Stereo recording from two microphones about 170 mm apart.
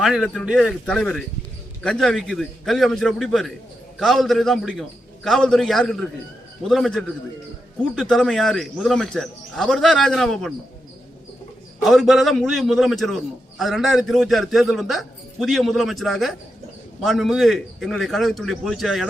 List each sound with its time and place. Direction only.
0.0 s a man's voice: centre (ahead or behind)
11.8 s a man's voice: centre (ahead or behind)